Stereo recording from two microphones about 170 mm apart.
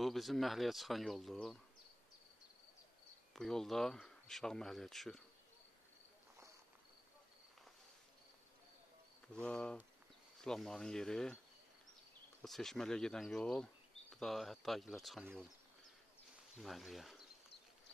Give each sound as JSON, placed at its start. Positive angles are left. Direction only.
{"t": 0.0, "sound": "speech", "side_deg": 0}
{"t": 3.3, "sound": "speech", "side_deg": 5}
{"t": 9.3, "sound": "speech", "side_deg": 5}
{"t": 12.4, "sound": "speech", "side_deg": 0}
{"t": 16.5, "sound": "speech", "side_deg": 0}